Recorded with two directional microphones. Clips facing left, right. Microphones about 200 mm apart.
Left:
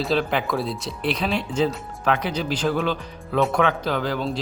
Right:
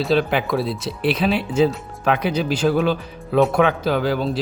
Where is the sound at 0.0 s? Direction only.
Centre (ahead or behind).